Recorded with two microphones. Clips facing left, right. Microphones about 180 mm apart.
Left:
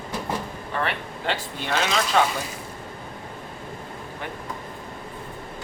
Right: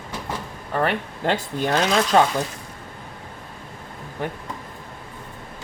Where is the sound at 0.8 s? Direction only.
45° right (ahead or behind).